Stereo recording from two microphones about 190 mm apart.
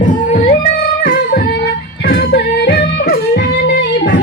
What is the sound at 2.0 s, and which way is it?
Music, 60° left (ahead or behind).